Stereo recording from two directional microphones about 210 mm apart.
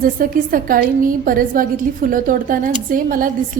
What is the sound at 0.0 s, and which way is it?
A woman's voice, 40° right (ahead or behind).